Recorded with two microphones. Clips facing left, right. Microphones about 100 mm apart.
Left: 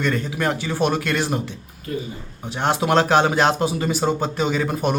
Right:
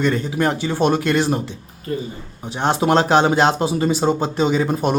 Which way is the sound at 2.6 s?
25° right (ahead or behind).